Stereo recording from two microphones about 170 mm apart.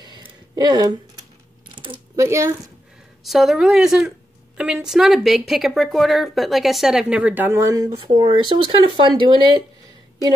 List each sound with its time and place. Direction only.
0.6 s speech: 25° right (ahead or behind)
1.8 s a sound: 30° right (ahead or behind)
2.2 s speech: 15° right (ahead or behind)
3.3 s speech: centre (ahead or behind); by 9.6 s 30° right (ahead or behind)